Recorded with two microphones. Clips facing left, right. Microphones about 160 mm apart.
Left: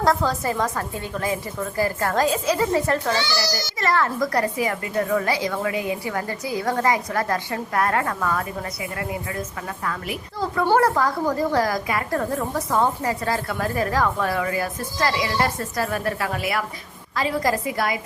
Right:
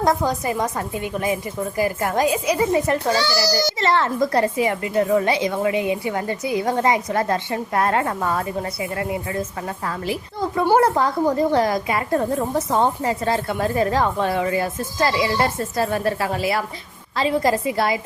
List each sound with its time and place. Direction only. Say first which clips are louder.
0.0 s a woman's voice: right 1 dB; 20° right (ahead or behind)
3.1 s a child's voice: right 4 dB; 40° right (ahead or behind)
10.6 s a child's voice: right 2 dB; 20° right (ahead or behind)